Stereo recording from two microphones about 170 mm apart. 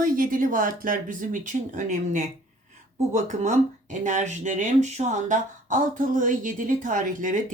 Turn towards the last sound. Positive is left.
turn(degrees=-50)  # may be behind; listen again after turning